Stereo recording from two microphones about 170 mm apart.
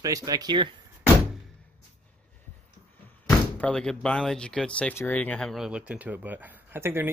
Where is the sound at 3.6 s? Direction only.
5° left (ahead or behind); by 7.1 s 15° right (ahead or behind).